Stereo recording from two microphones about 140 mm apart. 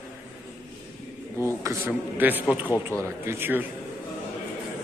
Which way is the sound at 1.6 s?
15° right (ahead or behind).